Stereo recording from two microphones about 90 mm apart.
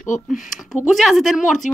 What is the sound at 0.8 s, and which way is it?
Speech, centre (ahead or behind).